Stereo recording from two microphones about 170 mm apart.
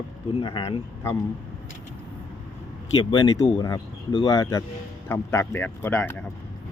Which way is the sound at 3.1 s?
25° left (ahead or behind).